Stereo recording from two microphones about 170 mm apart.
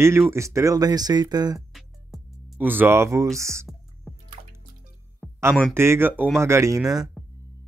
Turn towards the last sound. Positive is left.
turn(degrees=-20)  # may be behind; listen again after turning